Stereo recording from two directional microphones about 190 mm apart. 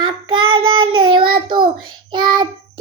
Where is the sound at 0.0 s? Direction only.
25° right (ahead or behind).